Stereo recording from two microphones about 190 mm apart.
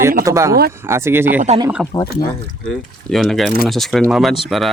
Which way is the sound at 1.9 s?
20° left (ahead or behind).